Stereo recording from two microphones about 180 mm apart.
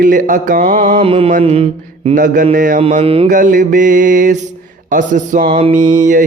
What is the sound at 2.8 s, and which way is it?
Speech, 40° right (ahead or behind).